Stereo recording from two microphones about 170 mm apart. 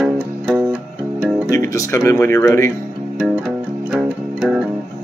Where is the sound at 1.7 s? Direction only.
15° left (ahead or behind).